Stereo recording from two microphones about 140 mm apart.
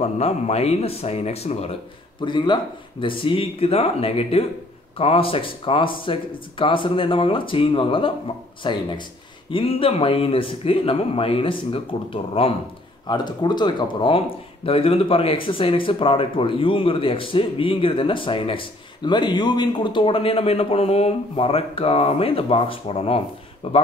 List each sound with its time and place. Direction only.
0.0 s speech: 50° left (ahead or behind)
2.1 s speech: 35° left (ahead or behind)